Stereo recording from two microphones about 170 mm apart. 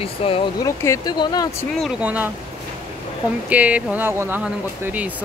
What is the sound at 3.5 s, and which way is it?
Speech, 10° right (ahead or behind).